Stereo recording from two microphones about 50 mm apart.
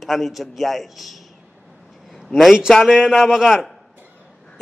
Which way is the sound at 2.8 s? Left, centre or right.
Centre.